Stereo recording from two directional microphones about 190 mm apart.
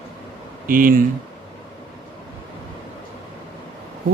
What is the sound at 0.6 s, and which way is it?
Speech, 45° right (ahead or behind).